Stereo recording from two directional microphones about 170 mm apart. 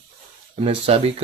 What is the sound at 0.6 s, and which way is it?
Speech, 35° right (ahead or behind).